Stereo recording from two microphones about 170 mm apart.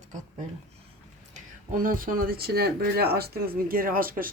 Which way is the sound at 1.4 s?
55° right (ahead or behind).